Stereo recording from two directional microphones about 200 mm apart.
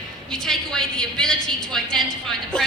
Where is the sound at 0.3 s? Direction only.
Centre (ahead or behind).